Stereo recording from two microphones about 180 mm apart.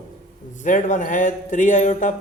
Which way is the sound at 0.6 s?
45° left (ahead or behind).